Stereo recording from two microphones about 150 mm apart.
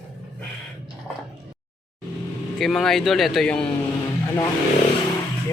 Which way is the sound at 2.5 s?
Centre (ahead or behind).